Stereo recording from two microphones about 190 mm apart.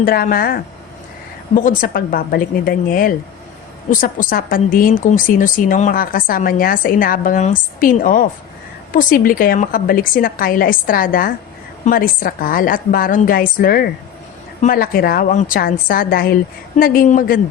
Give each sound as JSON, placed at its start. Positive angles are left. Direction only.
{"t": 0.0, "sound": "speech", "side_deg": 50}